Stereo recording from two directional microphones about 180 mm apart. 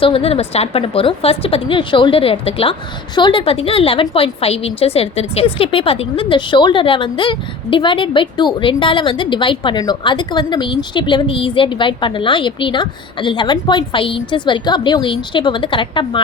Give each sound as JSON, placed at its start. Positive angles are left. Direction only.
{"t": 0.0, "sound": "a woman's voice", "side_deg": 30}